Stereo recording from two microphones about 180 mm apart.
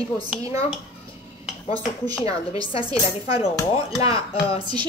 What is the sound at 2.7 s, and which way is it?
Speech, 30° left (ahead or behind).